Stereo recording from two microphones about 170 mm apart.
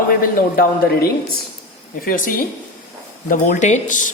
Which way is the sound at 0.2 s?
65° left (ahead or behind).